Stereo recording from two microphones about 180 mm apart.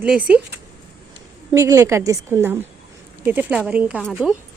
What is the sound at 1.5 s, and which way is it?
A woman's voice, 15° right (ahead or behind).